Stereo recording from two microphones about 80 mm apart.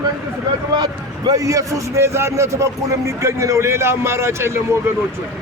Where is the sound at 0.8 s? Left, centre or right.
Right.